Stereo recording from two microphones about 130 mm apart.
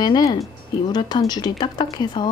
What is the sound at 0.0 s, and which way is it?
Speech, 35° left (ahead or behind).